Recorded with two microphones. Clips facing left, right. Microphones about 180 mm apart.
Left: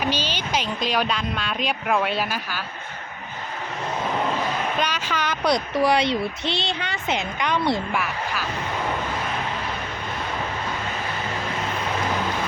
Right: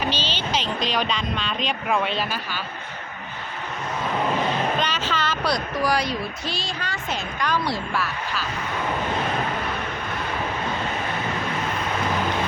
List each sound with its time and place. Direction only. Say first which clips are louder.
0.0 s speech: left 1 dB; 10° left (ahead or behind)
4.8 s speech: even; 10° left (ahead or behind)